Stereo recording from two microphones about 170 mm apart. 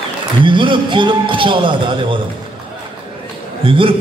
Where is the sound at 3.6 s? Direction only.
30° right (ahead or behind).